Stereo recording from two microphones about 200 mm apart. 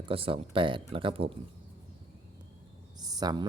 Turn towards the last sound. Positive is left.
turn(degrees=-20)  # may be behind; listen again after turning